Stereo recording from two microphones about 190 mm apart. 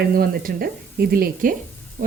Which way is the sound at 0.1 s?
50° right (ahead or behind).